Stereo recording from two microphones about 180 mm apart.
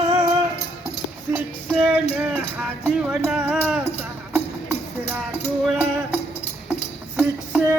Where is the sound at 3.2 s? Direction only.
5° right (ahead or behind).